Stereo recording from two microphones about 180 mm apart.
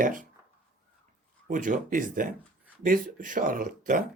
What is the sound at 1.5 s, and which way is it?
Speech, 45° right (ahead or behind).